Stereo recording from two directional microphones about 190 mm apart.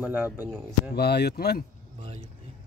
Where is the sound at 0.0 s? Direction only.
10° right (ahead or behind).